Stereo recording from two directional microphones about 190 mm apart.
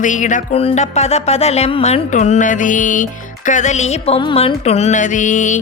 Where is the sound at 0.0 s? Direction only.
40° left (ahead or behind).